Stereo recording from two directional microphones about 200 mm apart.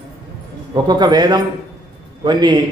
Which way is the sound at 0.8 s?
20° right (ahead or behind).